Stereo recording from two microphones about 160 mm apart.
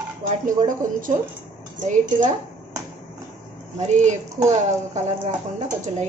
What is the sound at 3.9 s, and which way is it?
Speech, 50° right (ahead or behind).